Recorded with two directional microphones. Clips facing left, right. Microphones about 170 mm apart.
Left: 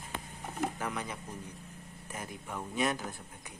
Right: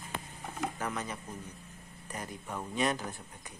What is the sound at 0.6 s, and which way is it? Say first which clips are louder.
Speech: left 1 dB; 15° left (ahead or behind).